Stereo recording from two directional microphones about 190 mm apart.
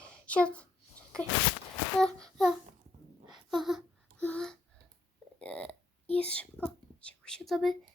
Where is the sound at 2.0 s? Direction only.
5° left (ahead or behind).